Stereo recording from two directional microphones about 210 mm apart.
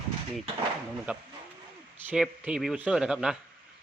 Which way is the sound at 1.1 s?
5° right (ahead or behind).